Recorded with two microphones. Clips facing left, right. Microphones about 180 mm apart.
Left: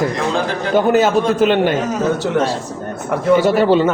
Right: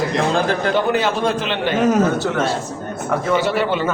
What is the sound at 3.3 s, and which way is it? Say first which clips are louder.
Speech: left 8 dB; 45° left (ahead or behind).